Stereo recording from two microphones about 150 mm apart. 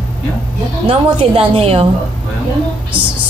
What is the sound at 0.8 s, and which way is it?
A woman's voice, 40° right (ahead or behind).